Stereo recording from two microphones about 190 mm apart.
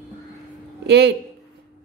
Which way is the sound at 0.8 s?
60° right (ahead or behind).